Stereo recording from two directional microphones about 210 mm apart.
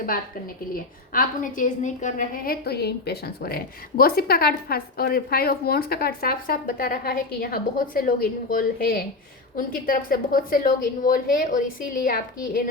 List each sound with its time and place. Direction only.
1.1 s a woman's voice: 40° left (ahead or behind)